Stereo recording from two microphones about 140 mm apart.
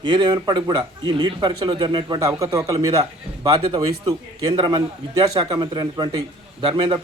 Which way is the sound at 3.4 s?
40° right (ahead or behind).